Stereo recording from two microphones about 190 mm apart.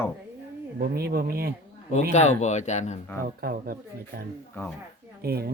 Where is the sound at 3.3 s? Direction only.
50° right (ahead or behind).